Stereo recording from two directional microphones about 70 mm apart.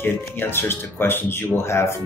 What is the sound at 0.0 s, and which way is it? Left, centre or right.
Speech, left.